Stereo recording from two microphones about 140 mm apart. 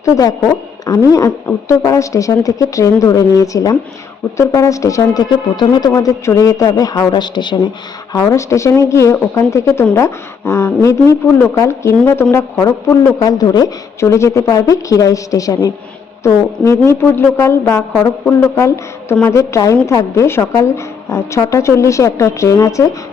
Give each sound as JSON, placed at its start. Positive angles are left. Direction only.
{"t": 0.0, "sound": "a woman's voice", "side_deg": 25}